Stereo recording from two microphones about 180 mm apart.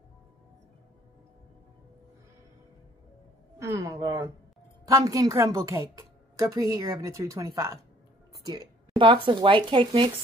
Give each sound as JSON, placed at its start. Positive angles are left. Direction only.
{"t": 3.5, "sound": "a woman's voice", "side_deg": -15}